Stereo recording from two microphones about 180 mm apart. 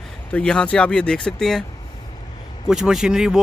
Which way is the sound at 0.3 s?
5° left (ahead or behind).